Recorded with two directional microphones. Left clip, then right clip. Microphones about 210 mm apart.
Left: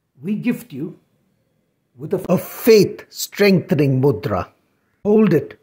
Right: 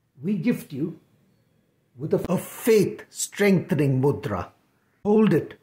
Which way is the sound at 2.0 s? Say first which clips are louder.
Left 5 dB; 10° left (ahead or behind).